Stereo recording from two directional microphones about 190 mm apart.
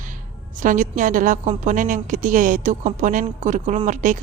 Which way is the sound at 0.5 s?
45° right (ahead or behind).